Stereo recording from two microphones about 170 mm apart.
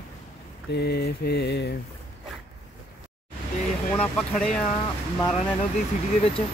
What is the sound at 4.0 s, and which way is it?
Speech, 5° left (ahead or behind).